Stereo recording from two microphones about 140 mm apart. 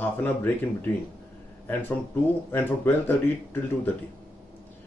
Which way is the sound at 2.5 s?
15° left (ahead or behind).